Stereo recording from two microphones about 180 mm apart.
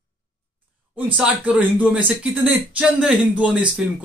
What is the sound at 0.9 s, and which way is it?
A man's voice, 10° right (ahead or behind).